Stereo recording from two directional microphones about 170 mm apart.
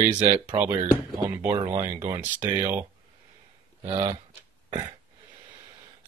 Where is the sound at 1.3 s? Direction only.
10° right (ahead or behind).